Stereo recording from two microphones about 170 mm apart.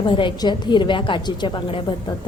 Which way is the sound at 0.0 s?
30° left (ahead or behind).